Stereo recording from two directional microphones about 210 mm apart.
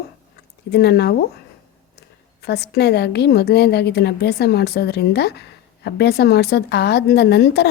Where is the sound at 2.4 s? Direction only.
50° left (ahead or behind).